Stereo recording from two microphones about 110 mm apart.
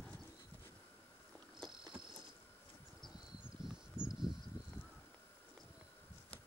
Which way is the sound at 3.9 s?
5° right (ahead or behind).